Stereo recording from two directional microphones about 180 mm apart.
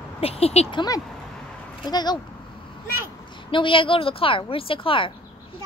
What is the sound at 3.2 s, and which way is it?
A woman's voice, 25° left (ahead or behind).